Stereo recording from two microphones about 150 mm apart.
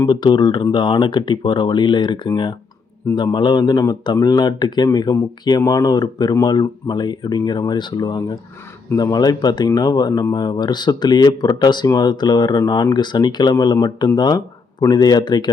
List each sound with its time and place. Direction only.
0.0 s speech: 30° left (ahead or behind)